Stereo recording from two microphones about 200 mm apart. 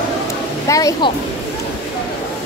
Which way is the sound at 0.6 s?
15° left (ahead or behind).